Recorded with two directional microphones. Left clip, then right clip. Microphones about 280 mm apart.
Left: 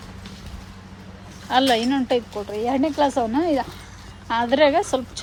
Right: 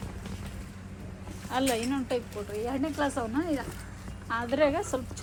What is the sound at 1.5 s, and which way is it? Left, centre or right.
A woman's voice, centre.